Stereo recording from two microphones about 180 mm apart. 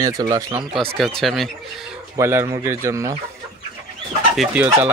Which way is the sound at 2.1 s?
15° right (ahead or behind).